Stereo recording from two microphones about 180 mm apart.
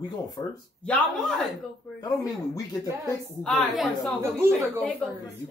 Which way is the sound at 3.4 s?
Centre (ahead or behind).